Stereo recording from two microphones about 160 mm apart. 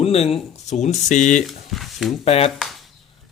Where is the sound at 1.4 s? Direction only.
Centre (ahead or behind).